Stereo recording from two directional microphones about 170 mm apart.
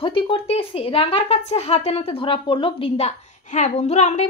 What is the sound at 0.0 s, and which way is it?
Speech, 30° left (ahead or behind).